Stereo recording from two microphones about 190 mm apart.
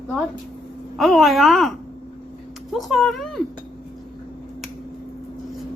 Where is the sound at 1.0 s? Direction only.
Centre (ahead or behind).